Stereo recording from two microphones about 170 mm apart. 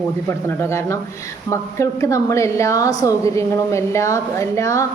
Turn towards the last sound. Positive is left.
turn(degrees=20)  # may be behind; listen again after turning